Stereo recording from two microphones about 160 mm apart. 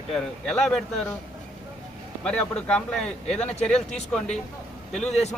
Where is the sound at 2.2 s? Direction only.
5° left (ahead or behind).